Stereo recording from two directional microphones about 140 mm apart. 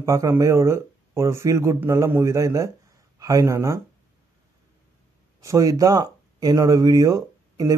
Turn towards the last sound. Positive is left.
turn(degrees=-25)  # may be behind; listen again after turning